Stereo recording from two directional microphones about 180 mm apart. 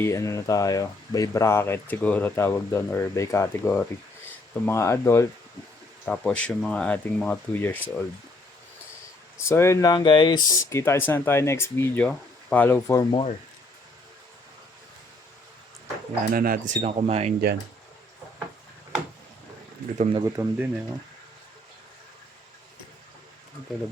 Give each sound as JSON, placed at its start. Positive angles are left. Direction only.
{"t": 0.0, "sound": "speech", "side_deg": 15}
{"t": 9.4, "sound": "speech", "side_deg": 15}
{"t": 13.1, "sound": "speech", "side_deg": 30}
{"t": 16.3, "sound": "speech", "side_deg": -55}
{"t": 20.1, "sound": "speech", "side_deg": -20}